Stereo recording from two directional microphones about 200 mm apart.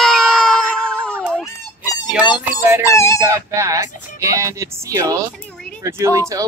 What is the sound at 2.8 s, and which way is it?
Speech, 15° left (ahead or behind).